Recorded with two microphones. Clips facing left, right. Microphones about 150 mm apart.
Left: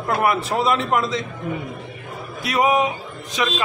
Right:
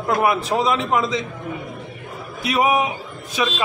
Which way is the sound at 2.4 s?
20° right (ahead or behind).